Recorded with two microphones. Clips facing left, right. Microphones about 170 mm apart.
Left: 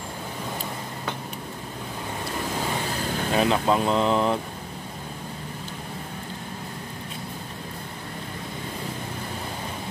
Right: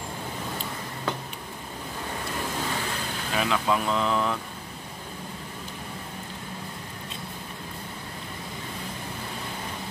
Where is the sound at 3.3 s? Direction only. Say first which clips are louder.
Left 4 dB; 35° left (ahead or behind).